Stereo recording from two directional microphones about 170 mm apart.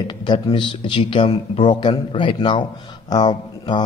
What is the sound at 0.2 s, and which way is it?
A man's voice, 25° left (ahead or behind).